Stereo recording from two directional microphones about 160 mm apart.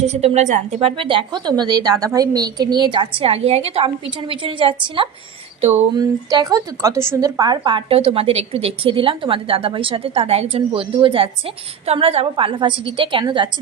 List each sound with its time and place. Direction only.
0.1 s a woman's voice: 40° right (ahead or behind)